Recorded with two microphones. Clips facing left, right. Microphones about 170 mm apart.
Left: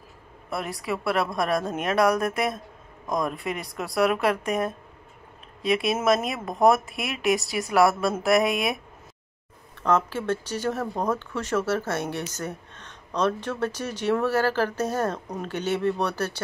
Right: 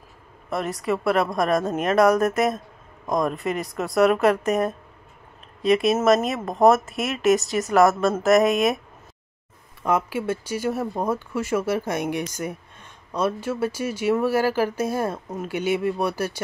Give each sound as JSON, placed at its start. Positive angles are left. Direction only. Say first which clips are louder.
{"t": 0.5, "sound": "speech", "louder": "right 5 dB", "side_deg": 10}
{"t": 6.9, "sound": "speech", "louder": "right 5 dB", "side_deg": -45}
{"t": 7.7, "sound": "speech", "louder": "right 3 dB", "side_deg": 10}
{"t": 9.8, "sound": "speech", "louder": "even", "side_deg": -10}